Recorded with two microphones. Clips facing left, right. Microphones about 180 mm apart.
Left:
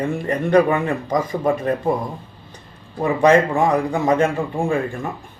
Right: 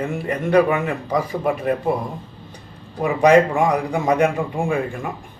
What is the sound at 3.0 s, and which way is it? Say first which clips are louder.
Speech: right 1 dB; 15° right (ahead or behind).